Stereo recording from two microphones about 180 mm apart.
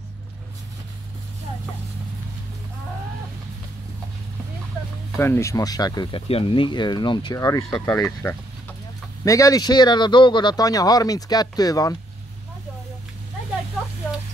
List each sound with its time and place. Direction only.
5.2 s speech: 15° left (ahead or behind)